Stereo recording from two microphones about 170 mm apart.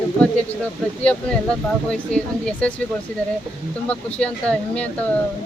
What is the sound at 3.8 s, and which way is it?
Speech, 5° left (ahead or behind).